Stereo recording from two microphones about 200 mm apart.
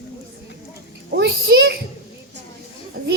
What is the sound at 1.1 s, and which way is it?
Speech, 60° right (ahead or behind).